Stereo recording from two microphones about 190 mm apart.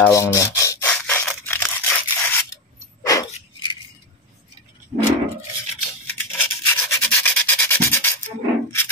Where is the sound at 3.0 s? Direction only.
20° left (ahead or behind).